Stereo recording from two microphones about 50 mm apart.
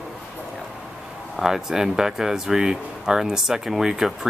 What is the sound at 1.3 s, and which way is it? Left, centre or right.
Speech, centre.